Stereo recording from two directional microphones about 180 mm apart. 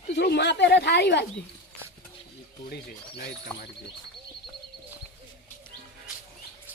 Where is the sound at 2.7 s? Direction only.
60° left (ahead or behind).